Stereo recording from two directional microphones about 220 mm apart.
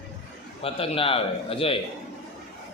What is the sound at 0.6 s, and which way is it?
A man's voice, 25° left (ahead or behind).